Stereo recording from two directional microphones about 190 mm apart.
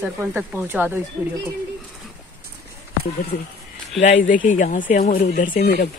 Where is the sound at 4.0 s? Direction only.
45° left (ahead or behind).